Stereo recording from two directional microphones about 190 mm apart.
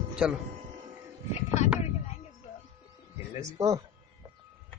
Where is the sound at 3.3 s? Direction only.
15° right (ahead or behind).